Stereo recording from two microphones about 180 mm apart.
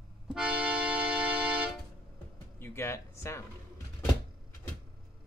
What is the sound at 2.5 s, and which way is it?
Speech, 15° left (ahead or behind).